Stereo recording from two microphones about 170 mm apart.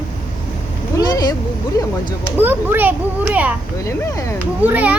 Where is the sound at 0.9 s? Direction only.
20° left (ahead or behind).